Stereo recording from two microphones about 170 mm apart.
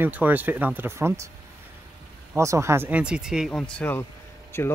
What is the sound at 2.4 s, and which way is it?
Speech, 15° right (ahead or behind).